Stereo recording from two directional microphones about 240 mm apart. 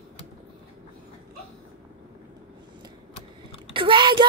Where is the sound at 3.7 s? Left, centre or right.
Centre.